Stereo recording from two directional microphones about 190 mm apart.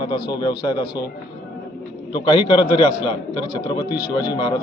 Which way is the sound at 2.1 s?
25° left (ahead or behind).